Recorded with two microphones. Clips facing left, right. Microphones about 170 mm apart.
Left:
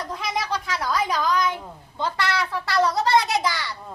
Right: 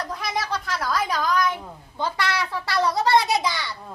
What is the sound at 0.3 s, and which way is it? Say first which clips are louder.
Cat: even; 15° left (ahead or behind).